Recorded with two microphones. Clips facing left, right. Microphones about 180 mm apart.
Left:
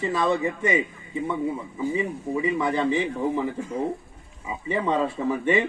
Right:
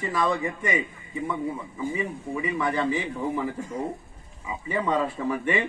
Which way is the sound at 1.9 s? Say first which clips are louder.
Left 4 dB; 20° left (ahead or behind).